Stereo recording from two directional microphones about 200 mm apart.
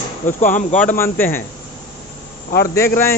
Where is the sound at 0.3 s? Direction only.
40° left (ahead or behind).